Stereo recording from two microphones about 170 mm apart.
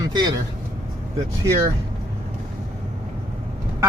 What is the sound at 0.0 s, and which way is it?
Speech, 20° right (ahead or behind).